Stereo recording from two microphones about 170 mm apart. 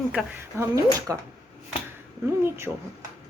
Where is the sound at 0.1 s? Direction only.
10° right (ahead or behind).